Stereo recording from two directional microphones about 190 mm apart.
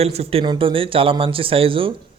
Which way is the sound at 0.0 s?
30° right (ahead or behind).